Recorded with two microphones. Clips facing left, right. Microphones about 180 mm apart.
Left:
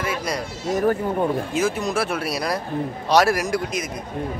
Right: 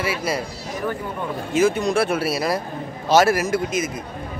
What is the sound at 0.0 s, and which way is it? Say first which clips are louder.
Speech: right 2 dB; 5° right (ahead or behind).